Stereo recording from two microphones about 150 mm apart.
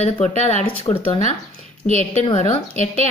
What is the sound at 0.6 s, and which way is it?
Speech, 35° left (ahead or behind).